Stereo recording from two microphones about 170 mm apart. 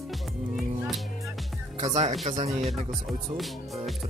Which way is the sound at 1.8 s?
45° right (ahead or behind).